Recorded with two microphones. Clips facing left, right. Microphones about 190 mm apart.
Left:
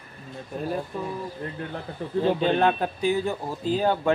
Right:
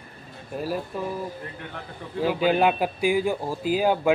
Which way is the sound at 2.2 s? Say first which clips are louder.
Even; 10° right (ahead or behind).